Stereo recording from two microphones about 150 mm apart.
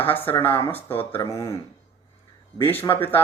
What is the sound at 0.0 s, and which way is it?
A man's voice, 15° left (ahead or behind).